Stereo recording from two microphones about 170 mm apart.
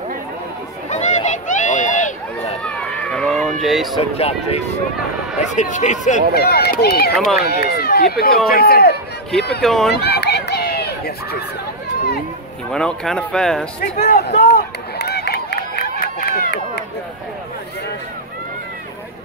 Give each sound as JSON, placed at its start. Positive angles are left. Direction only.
{"t": 0.8, "sound": "run", "side_deg": 40}
{"t": 2.6, "sound": "run", "side_deg": 5}
{"t": 4.2, "sound": "speech", "side_deg": 35}
{"t": 6.3, "sound": "speech", "side_deg": 65}
{"t": 9.6, "sound": "speech", "side_deg": 5}
{"t": 10.0, "sound": "run", "side_deg": 75}
{"t": 12.7, "sound": "speech", "side_deg": 5}
{"t": 14.0, "sound": "run", "side_deg": 70}